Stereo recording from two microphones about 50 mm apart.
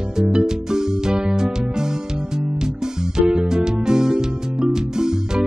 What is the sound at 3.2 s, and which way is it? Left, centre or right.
Music, centre.